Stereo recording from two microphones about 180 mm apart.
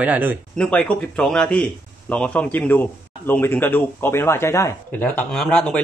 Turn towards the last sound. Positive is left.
turn(degrees=5)  # may be behind; listen again after turning